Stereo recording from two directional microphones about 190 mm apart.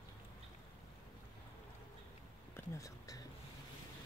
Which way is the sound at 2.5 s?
15° left (ahead or behind).